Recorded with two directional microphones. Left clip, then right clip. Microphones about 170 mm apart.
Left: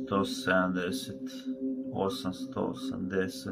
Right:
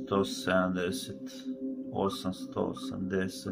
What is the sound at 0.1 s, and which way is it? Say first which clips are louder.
Speech: even; 5° right (ahead or behind).